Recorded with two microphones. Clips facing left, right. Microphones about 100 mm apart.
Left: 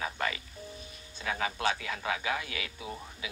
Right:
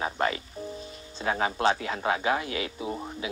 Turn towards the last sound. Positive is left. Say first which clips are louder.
# right 8 dB
turn(degrees=-30)  # may be behind; listen again after turning